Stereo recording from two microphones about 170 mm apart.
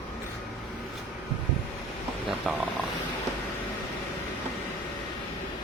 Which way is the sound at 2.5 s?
Centre (ahead or behind).